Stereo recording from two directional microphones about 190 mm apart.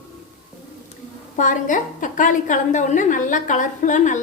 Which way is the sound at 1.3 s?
40° left (ahead or behind).